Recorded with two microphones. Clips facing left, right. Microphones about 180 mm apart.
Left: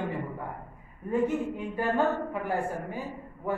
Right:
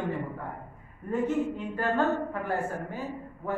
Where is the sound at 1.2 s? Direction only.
10° left (ahead or behind).